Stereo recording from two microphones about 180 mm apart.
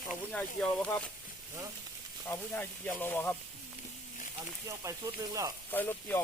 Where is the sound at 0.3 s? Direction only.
5° left (ahead or behind).